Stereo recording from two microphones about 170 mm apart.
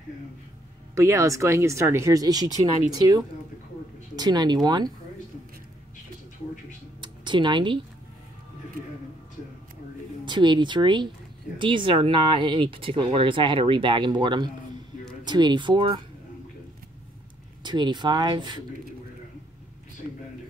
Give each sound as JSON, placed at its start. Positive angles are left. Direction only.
{"t": 0.9, "sound": "speech", "side_deg": -20}
{"t": 7.0, "sound": "a sound", "side_deg": -25}
{"t": 10.2, "sound": "speech", "side_deg": -25}
{"t": 17.6, "sound": "speech", "side_deg": -25}